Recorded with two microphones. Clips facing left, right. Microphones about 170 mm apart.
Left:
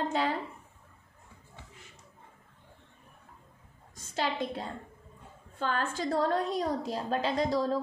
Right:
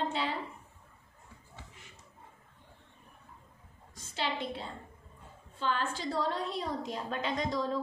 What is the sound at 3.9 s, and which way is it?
A woman's voice, 45° left (ahead or behind).